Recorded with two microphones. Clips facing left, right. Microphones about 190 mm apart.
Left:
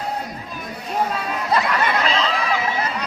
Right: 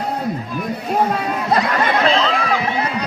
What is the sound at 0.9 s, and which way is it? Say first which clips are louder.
Speech: right 4 dB; 55° right (ahead or behind).